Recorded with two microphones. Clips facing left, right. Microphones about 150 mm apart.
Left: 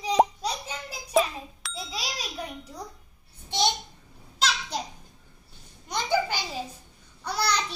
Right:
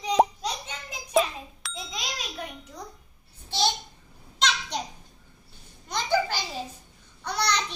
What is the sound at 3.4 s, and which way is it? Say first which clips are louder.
Babbling: left 1 dB; 20° left (ahead or behind).